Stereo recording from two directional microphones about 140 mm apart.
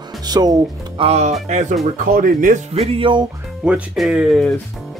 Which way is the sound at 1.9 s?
85° right.